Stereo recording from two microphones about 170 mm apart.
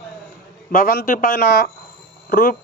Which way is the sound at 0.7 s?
55° left (ahead or behind).